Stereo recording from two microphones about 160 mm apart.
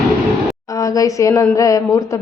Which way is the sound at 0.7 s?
20° left (ahead or behind).